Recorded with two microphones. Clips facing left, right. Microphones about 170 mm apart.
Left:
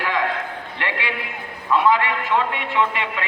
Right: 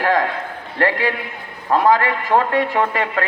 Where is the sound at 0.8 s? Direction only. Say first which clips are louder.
Right 9 dB; 40° right (ahead or behind).